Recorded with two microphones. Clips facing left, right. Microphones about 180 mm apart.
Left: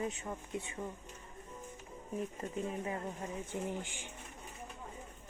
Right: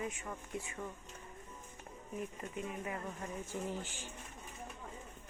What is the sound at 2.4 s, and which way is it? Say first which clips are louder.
Speech: left 4 dB; 30° left (ahead or behind).